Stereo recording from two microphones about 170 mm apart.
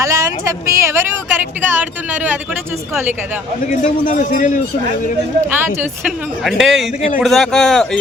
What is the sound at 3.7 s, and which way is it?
Speech, 50° left (ahead or behind).